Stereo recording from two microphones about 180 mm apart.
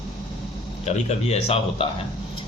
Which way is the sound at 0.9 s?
35° left (ahead or behind).